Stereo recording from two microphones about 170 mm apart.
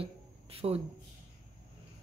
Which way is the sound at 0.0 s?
35° right (ahead or behind).